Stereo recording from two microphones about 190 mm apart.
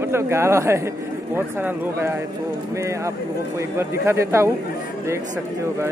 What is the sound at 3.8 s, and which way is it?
Speech, 15° right (ahead or behind).